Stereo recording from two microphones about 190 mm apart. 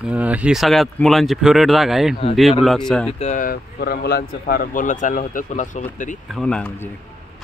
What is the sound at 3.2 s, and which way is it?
Speech, 45° left (ahead or behind).